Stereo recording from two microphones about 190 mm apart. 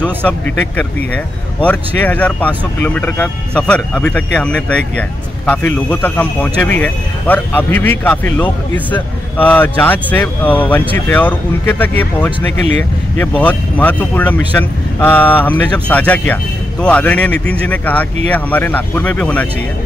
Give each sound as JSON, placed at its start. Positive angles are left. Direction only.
{"t": 0.0, "sound": "speech", "side_deg": 5}
{"t": 13.4, "sound": "speech", "side_deg": 10}